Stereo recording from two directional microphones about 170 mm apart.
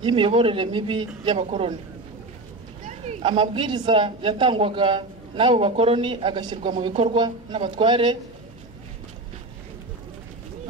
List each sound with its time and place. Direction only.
0.0 s a man's voice: 30° right (ahead or behind)
2.8 s a woman's voice: 40° right (ahead or behind)